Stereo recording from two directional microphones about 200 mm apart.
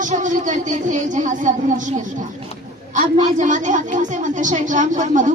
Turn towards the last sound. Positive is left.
turn(degrees=-40)  # may be behind; listen again after turning